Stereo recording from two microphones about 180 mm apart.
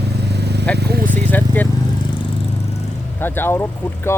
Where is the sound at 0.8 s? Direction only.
65° right (ahead or behind).